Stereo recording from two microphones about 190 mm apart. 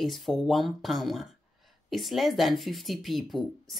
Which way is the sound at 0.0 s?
Centre (ahead or behind).